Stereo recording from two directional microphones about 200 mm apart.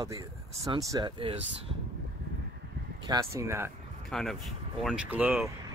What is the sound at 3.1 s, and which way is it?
Speech, 15° right (ahead or behind).